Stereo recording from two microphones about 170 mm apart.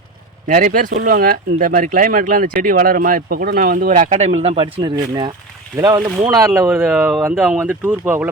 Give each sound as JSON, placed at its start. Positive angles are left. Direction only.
{"t": 0.4, "sound": "speech", "side_deg": -55}